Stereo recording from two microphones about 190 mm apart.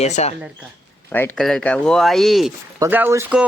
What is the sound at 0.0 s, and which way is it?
Speech, 35° left (ahead or behind).